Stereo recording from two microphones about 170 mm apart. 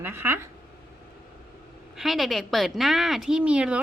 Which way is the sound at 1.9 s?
Centre (ahead or behind).